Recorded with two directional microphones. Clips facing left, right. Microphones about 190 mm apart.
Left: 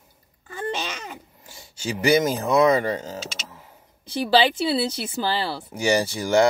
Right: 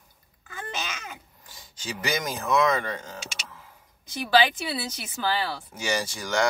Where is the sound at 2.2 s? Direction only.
25° left (ahead or behind).